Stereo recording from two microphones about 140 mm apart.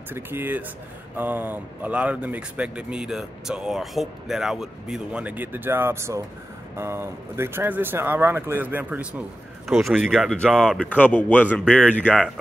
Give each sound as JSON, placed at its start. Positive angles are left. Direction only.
{"t": 0.1, "sound": "speech", "side_deg": -15}
{"t": 9.7, "sound": "speech", "side_deg": 0}